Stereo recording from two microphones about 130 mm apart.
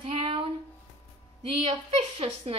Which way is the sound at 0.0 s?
45° right (ahead or behind).